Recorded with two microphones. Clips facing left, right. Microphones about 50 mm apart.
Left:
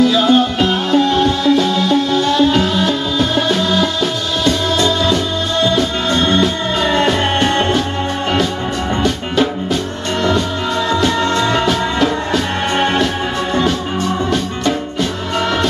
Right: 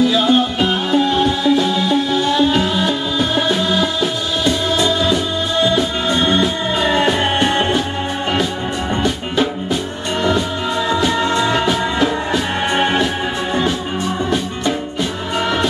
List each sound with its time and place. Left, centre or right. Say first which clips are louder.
0.0 s music: left 2 dB; centre
10.2 s music: left 1 dB; centre
15.3 s music: left 1 dB; centre